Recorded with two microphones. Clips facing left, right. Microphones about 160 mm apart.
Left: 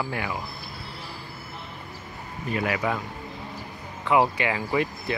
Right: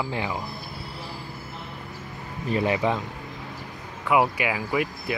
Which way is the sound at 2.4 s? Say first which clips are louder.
Right 3 dB; 30° right (ahead or behind).